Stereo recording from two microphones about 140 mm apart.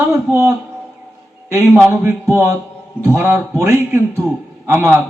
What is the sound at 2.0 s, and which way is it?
A man's voice, 20° right (ahead or behind).